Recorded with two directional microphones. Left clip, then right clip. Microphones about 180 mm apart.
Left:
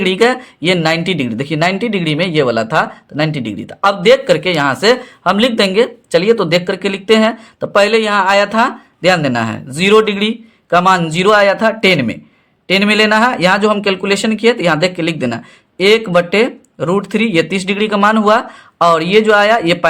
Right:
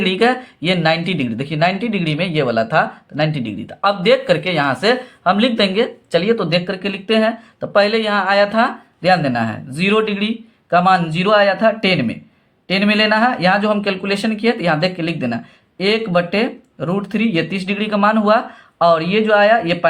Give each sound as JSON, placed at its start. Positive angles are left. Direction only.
{"t": 0.0, "sound": "speech", "side_deg": 35}